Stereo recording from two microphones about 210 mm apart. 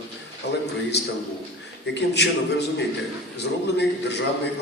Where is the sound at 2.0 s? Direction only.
55° left (ahead or behind).